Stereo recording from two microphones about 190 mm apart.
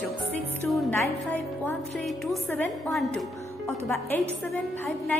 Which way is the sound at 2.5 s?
5° left (ahead or behind).